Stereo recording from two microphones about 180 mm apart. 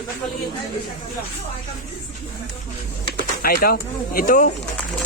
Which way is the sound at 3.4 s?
55° left (ahead or behind).